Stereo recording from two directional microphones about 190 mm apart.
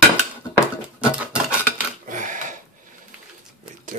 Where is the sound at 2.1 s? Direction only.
45° right (ahead or behind).